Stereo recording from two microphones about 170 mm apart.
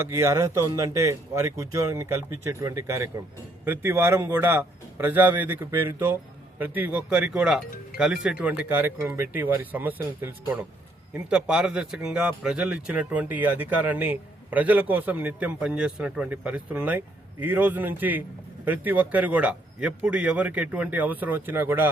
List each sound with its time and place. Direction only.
0.0 s speech: 15° right (ahead or behind)